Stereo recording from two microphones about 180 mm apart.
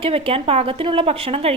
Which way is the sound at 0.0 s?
35° right (ahead or behind).